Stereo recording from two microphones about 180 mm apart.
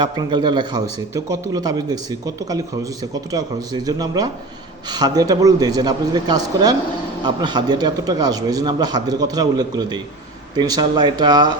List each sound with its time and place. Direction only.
0.0 s a man's voice: 25° right (ahead or behind)